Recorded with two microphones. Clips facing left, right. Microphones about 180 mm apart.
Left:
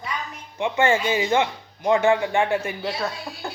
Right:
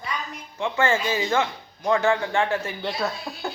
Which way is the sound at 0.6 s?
20° left (ahead or behind).